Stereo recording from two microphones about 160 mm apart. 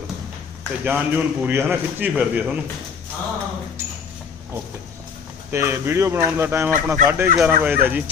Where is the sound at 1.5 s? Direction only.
10° right (ahead or behind).